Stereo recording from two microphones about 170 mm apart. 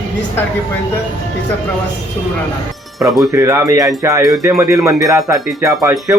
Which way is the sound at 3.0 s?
Centre (ahead or behind).